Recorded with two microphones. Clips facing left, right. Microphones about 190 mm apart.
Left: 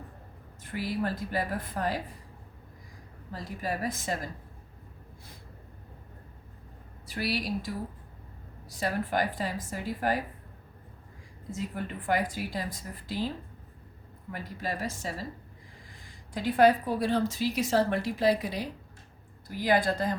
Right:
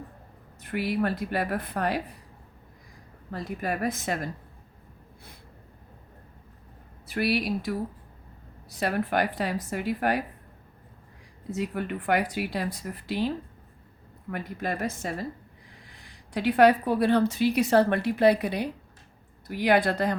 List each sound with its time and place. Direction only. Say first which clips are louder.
0.6 s a woman's voice: right 4 dB; 65° right (ahead or behind)
3.3 s a woman's voice: right 3 dB; 60° right (ahead or behind)
7.1 s a woman's voice: right 5 dB; 60° right (ahead or behind)
8.7 s a woman's voice: right 3 dB; 65° right (ahead or behind)
11.5 s a woman's voice: right 5 dB; 65° right (ahead or behind)